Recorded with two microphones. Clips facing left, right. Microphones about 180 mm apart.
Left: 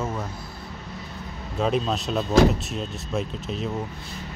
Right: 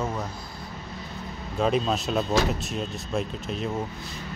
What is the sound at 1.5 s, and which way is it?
Speech, centre (ahead or behind).